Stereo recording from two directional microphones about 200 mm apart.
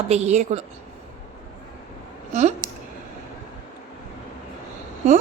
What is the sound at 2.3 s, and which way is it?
Speech, 35° right (ahead or behind).